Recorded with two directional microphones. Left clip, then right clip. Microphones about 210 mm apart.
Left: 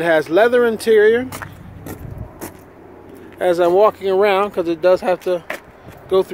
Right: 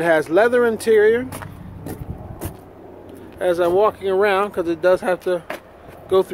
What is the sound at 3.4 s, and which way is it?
Speech, 35° left (ahead or behind).